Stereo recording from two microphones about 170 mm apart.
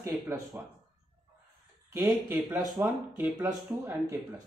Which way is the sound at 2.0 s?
Centre (ahead or behind).